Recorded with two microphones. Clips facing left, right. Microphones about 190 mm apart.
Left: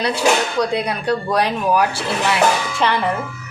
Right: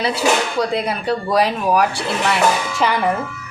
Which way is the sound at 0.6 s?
5° right (ahead or behind).